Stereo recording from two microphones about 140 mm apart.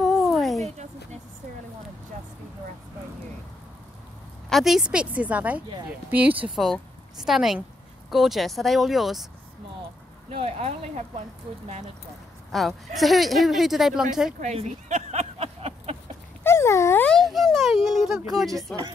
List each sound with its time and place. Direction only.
0.0 s a sound: centre (ahead or behind)
4.5 s a woman's voice: centre (ahead or behind)
6.5 s speech: centre (ahead or behind)
10.3 s speech: 45° right (ahead or behind)
12.4 s speech: centre (ahead or behind)
14.4 s a sound: 50° right (ahead or behind)
16.4 s dog: 20° left (ahead or behind)
17.1 s a sound: centre (ahead or behind)
18.7 s speech: 10° left (ahead or behind)